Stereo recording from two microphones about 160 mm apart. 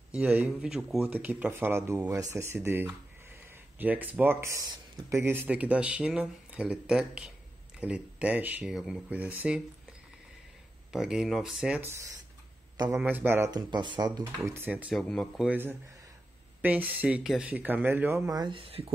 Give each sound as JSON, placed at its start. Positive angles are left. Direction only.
{"t": 0.1, "sound": "speech", "side_deg": -10}
{"t": 10.9, "sound": "a man's voice", "side_deg": -5}
{"t": 13.0, "sound": "speech", "side_deg": -10}
{"t": 13.5, "sound": "speech", "side_deg": -25}
{"t": 15.0, "sound": "speech", "side_deg": 5}
{"t": 15.4, "sound": "speech", "side_deg": -10}